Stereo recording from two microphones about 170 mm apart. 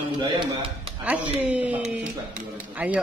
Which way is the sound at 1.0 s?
10° right (ahead or behind).